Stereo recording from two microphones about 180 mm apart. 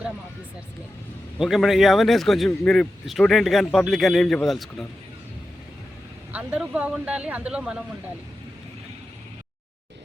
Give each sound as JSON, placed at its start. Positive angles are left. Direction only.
{"t": 1.4, "sound": "speech", "side_deg": 0}
{"t": 6.3, "sound": "speech", "side_deg": -5}